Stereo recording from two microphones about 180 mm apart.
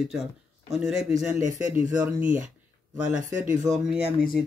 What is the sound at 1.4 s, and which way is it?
Speech, 45° right (ahead or behind).